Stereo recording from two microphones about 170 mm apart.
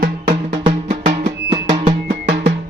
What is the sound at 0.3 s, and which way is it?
Music, 35° right (ahead or behind).